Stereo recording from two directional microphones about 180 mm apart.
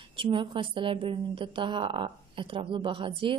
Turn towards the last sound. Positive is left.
turn(degrees=-30)  # may be behind; listen again after turning